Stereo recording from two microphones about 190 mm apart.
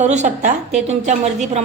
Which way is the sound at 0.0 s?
40° right (ahead or behind).